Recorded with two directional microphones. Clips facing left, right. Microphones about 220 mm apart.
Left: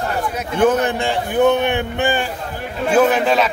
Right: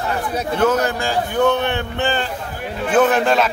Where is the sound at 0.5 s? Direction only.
15° left (ahead or behind); by 3.5 s centre (ahead or behind).